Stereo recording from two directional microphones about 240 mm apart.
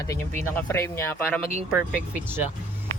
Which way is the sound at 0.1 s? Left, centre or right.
Centre.